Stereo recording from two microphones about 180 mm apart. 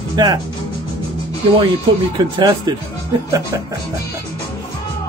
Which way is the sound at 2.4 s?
25° right (ahead or behind).